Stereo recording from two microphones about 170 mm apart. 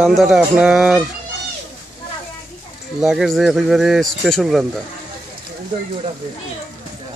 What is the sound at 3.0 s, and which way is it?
A man's voice, centre (ahead or behind).